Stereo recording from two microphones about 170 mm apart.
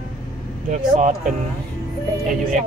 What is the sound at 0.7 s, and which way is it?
Speech, 45° right (ahead or behind).